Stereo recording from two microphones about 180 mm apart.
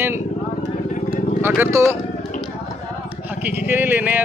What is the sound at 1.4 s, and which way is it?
Speech, 10° right (ahead or behind).